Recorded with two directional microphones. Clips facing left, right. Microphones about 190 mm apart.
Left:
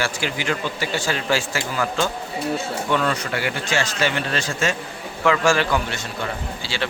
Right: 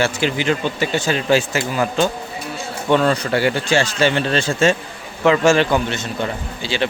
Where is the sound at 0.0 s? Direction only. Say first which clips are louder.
Right 6 dB; 25° right (ahead or behind).